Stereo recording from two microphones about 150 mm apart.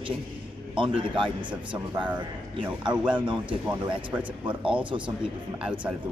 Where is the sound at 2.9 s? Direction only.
30° right (ahead or behind).